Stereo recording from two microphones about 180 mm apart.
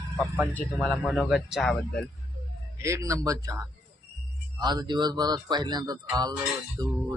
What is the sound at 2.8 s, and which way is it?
A man's voice, 15° right (ahead or behind).